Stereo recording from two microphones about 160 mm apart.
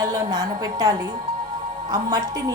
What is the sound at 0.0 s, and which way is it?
A woman's voice, 25° right (ahead or behind).